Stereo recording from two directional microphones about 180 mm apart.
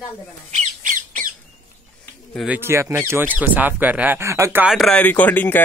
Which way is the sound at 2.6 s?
15° right (ahead or behind).